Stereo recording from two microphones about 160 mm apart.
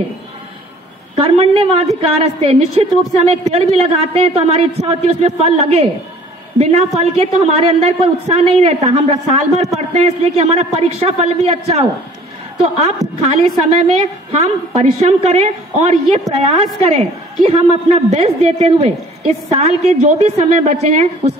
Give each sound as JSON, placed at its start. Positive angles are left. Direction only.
{"t": 1.1, "sound": "a woman's voice", "side_deg": -35}
{"t": 13.3, "sound": "a woman's voice", "side_deg": -40}